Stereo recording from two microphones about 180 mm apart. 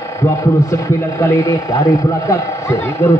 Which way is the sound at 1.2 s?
20° left (ahead or behind).